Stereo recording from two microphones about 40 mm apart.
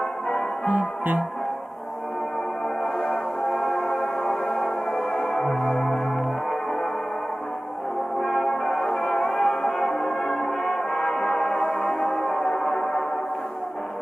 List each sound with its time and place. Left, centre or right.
3.4 s music: centre
8.2 s music: centre